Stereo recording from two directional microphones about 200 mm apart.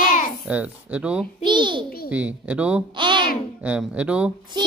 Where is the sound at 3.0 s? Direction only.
25° right (ahead or behind).